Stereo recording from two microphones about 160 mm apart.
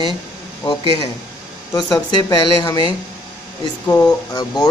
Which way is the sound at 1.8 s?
25° left (ahead or behind).